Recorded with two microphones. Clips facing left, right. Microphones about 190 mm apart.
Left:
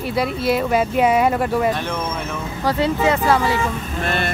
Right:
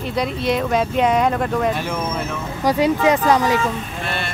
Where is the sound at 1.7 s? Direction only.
5° right (ahead or behind).